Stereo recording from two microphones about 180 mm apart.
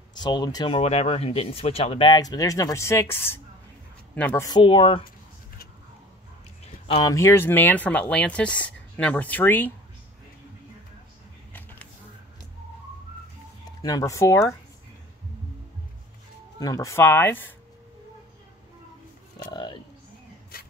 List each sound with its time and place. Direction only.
0.1 s speech: 25° left (ahead or behind); by 4.5 s 10° left (ahead or behind)
4.5 s speech: 25° left (ahead or behind)
7.0 s speech: 20° left (ahead or behind)
13.7 s speech: 20° left (ahead or behind)
16.5 s speech: 20° left (ahead or behind)
19.4 s speech: 25° left (ahead or behind)